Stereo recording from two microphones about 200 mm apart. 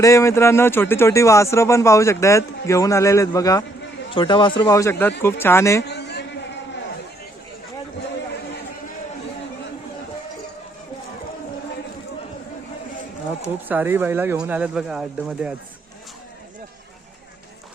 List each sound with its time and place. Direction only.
0.0 s speech: 15° left (ahead or behind)
5.8 s a sound: 55° left (ahead or behind)
13.7 s speech: 10° right (ahead or behind)